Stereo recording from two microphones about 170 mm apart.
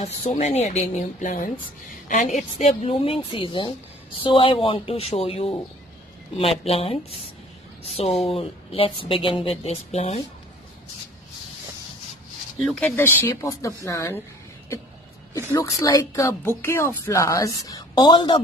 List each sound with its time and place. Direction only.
0.0 s a woman's voice: 40° left (ahead or behind)
12.6 s speech: 10° left (ahead or behind)
15.5 s speech: 20° left (ahead or behind)